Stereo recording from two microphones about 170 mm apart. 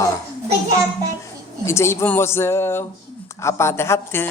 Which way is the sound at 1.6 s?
15° left (ahead or behind).